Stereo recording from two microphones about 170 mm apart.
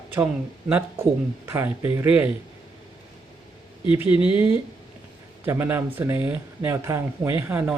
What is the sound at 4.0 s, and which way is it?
Speech, 10° right (ahead or behind).